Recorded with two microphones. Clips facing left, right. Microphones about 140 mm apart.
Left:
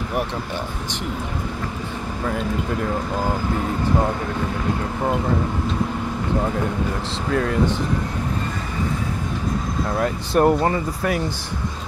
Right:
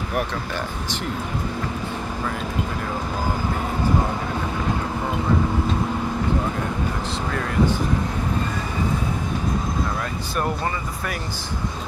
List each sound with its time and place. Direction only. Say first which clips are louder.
9.9 s speech: left 7 dB; 30° left (ahead or behind)